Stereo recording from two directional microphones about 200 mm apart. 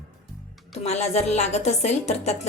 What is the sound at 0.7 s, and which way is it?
A woman's voice, 35° left (ahead or behind).